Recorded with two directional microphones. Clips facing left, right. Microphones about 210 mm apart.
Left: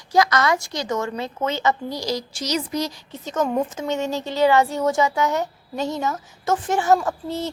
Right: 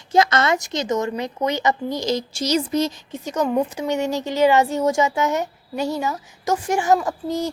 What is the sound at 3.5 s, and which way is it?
Speech, 10° right (ahead or behind).